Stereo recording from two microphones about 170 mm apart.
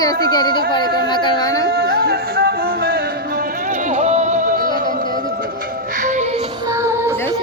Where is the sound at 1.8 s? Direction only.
65° right (ahead or behind).